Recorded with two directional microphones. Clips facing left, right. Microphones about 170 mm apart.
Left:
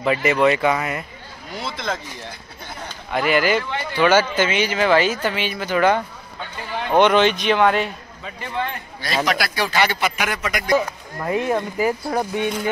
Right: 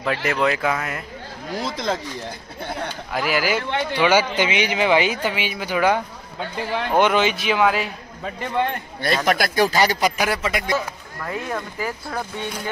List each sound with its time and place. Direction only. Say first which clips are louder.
0.0 s speech: left 4 dB; centre (ahead or behind)
1.6 s speech: right 2 dB; 40° right (ahead or behind)
3.1 s speech: left 4 dB; 5° right (ahead or behind)
9.0 s speech: right 2 dB; 50° right (ahead or behind); by 10.6 s 30° right (ahead or behind)
11.1 s speech: left 7 dB; 20° left (ahead or behind)